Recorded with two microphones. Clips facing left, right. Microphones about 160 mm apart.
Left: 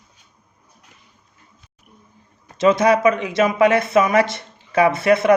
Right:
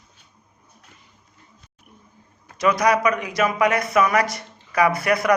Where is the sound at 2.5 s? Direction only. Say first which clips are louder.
Left 4 dB; 25° left (ahead or behind).